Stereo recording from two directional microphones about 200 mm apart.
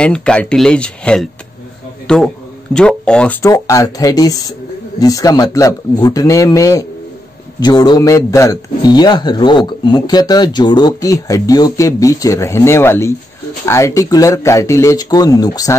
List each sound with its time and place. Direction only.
0.0 s a man's voice: 5° left (ahead or behind)